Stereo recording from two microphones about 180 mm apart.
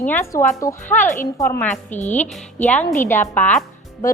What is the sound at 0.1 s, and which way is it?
Speech, 15° left (ahead or behind).